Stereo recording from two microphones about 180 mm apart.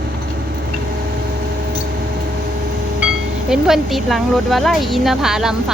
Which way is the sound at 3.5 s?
Centre (ahead or behind).